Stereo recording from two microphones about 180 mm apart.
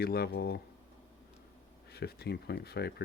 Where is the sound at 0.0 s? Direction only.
60° left (ahead or behind).